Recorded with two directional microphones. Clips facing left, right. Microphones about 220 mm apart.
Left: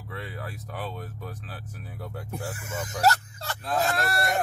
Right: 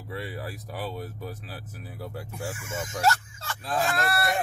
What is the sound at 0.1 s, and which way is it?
Speech, 10° right (ahead or behind).